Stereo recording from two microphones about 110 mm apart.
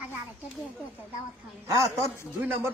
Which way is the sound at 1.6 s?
30° right (ahead or behind).